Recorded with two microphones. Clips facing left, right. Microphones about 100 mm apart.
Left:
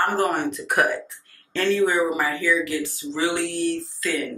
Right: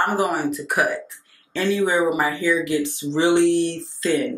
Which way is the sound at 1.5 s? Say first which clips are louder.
Even; 15° right (ahead or behind).